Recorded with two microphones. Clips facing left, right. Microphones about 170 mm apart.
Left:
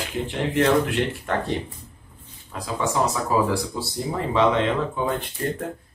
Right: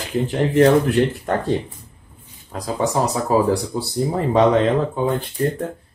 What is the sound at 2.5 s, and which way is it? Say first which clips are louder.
Speech: right 4 dB; 40° right (ahead or behind).